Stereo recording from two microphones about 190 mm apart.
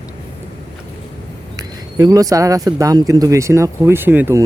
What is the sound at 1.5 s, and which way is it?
Speech, 20° right (ahead or behind).